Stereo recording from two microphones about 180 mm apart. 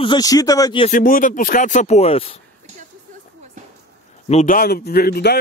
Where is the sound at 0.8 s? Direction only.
50° left (ahead or behind); by 2.3 s 35° left (ahead or behind).